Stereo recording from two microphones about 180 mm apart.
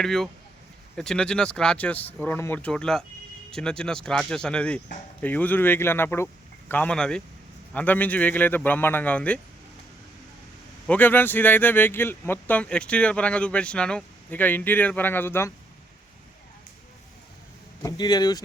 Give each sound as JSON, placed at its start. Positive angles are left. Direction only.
{"t": 0.0, "sound": "speech", "side_deg": 0}
{"t": 10.8, "sound": "speech", "side_deg": 10}
{"t": 17.8, "sound": "speech", "side_deg": 20}